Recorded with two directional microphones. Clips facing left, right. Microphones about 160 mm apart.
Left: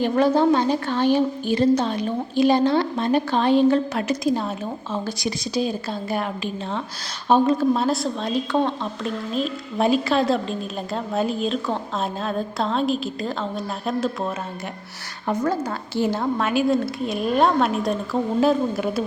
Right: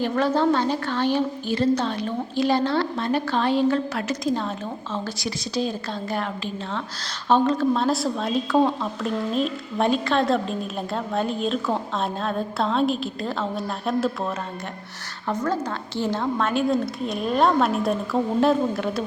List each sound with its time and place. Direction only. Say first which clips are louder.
0.0 s a woman's voice: left 3 dB; 15° left (ahead or behind)